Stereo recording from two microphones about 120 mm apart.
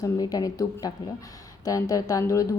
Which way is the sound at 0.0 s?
30° left (ahead or behind).